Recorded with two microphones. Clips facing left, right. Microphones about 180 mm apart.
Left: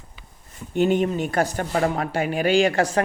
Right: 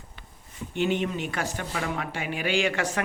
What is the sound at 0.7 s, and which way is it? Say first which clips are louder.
A woman's voice: left 6 dB; 45° left (ahead or behind).